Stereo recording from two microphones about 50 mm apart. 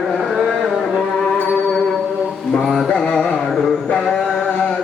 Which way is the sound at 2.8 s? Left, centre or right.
Centre.